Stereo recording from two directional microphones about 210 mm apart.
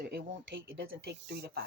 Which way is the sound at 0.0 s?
50° right (ahead or behind).